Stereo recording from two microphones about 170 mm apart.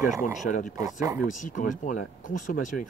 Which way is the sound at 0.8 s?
20° right (ahead or behind).